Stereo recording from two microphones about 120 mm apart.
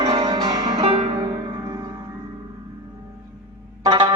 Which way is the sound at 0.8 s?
55° right (ahead or behind).